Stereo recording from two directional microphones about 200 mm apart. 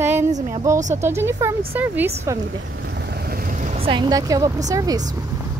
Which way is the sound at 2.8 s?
55° right (ahead or behind).